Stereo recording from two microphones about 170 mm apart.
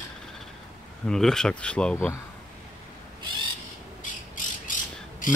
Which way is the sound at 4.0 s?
50° left (ahead or behind).